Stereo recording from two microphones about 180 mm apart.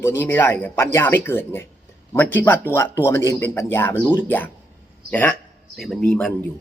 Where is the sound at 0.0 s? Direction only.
10° left (ahead or behind).